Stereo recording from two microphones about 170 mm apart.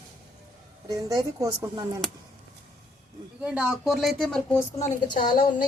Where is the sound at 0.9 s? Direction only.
20° right (ahead or behind).